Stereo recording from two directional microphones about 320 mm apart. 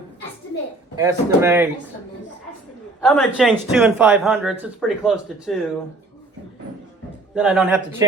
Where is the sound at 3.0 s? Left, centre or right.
Centre.